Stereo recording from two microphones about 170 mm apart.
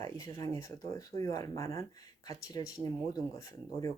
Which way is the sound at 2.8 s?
35° right (ahead or behind).